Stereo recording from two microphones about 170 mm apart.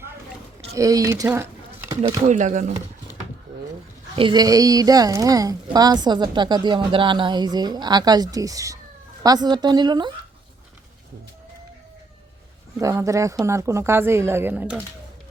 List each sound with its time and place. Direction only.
0.7 s speech: 20° right (ahead or behind)
1.9 s a sound: 25° right (ahead or behind)
2.2 s speech: 45° right (ahead or behind)
4.1 s a woman's voice: 30° right (ahead or behind)
12.8 s a woman's voice: 20° right (ahead or behind)